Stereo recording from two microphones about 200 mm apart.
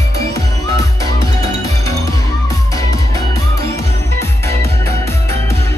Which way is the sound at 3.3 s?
15° left (ahead or behind).